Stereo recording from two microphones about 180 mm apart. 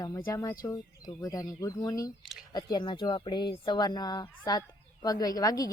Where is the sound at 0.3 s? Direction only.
15° left (ahead or behind).